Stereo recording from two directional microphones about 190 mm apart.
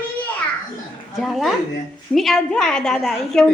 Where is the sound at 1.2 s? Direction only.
Centre (ahead or behind).